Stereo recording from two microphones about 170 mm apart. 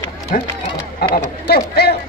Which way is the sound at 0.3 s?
50° left (ahead or behind).